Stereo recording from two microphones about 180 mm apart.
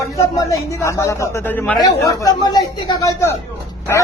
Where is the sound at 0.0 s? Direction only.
15° left (ahead or behind).